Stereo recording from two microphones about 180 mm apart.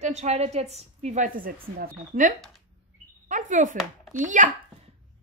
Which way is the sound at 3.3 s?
45° right (ahead or behind).